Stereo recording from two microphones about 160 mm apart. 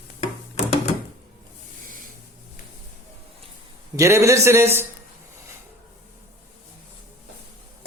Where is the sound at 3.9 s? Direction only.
20° right (ahead or behind).